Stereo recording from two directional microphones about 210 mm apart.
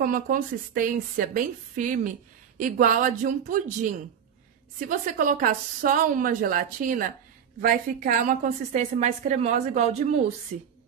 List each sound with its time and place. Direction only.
0.0 s a woman's voice: 40° right (ahead or behind)